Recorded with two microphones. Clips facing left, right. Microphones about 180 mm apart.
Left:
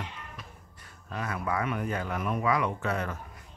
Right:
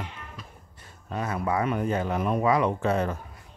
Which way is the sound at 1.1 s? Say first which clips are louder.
Right 4 dB; 30° right (ahead or behind).